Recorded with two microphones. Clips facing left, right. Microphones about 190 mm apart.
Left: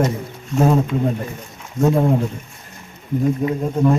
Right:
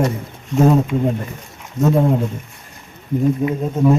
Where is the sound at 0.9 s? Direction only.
20° right (ahead or behind).